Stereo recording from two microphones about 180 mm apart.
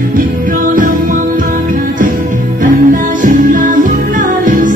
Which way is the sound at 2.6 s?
50° right (ahead or behind).